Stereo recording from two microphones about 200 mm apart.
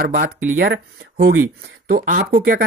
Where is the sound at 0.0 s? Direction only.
45° right (ahead or behind).